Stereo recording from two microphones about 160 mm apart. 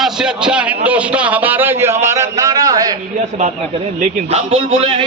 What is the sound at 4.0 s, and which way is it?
Speech, 40° right (ahead or behind).